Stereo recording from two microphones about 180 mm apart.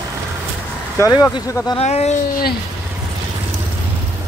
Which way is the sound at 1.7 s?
35° left (ahead or behind).